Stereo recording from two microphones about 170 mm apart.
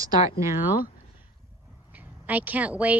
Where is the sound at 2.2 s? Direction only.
10° right (ahead or behind).